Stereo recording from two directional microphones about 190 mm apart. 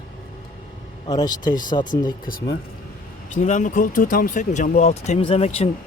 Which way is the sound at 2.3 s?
50° left (ahead or behind).